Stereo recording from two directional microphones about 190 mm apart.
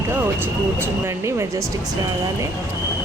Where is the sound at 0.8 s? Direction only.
15° right (ahead or behind).